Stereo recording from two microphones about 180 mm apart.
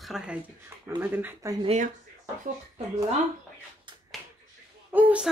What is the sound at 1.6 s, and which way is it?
Speech, 40° right (ahead or behind).